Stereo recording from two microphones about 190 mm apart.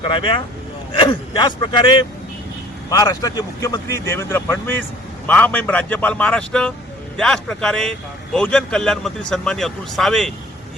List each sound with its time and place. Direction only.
0.0 s a man's voice: 25° left (ahead or behind); by 10.3 s centre (ahead or behind)